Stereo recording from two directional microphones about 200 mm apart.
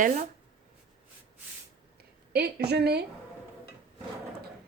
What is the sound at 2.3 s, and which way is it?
Speech, 55° right (ahead or behind).